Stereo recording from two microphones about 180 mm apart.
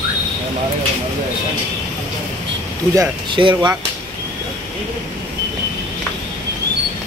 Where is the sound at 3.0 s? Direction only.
25° right (ahead or behind).